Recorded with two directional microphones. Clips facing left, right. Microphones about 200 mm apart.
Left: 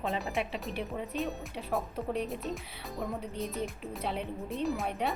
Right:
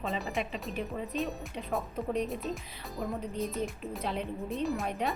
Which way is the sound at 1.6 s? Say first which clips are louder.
Even; 10° left (ahead or behind).